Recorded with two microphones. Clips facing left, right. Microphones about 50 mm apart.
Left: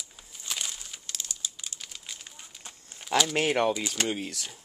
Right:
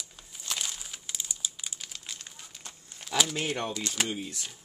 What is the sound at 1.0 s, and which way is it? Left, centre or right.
Crumpling, centre.